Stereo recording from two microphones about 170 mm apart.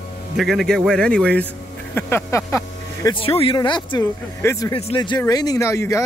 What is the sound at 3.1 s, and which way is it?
Speech, 35° left (ahead or behind).